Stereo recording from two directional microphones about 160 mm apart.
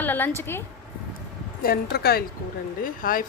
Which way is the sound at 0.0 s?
10° left (ahead or behind).